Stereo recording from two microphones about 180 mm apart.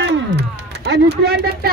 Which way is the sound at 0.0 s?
70° right (ahead or behind).